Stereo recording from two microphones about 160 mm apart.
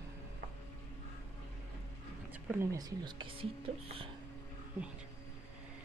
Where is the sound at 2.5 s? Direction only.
20° right (ahead or behind).